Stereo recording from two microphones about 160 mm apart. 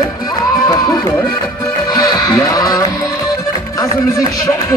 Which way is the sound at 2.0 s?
20° left (ahead or behind).